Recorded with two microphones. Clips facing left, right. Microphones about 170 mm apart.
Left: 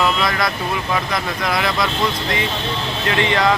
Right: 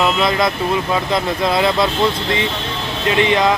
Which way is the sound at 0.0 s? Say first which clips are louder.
Right 3 dB; 20° right (ahead or behind).